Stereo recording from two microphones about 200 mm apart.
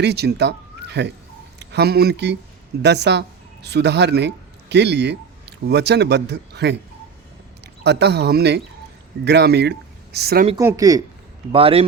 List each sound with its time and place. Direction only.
0.0 s speech: 55° right (ahead or behind)
10.6 s speech: 15° right (ahead or behind)
11.5 s speech: 30° right (ahead or behind)